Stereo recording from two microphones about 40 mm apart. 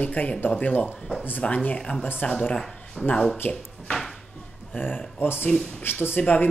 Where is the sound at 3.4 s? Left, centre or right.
Left.